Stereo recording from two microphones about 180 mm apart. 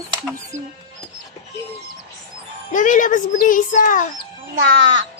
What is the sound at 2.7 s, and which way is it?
A child's voice, 45° left (ahead or behind).